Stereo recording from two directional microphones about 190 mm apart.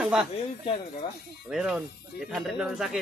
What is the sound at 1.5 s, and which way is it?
Speech, 5° right (ahead or behind).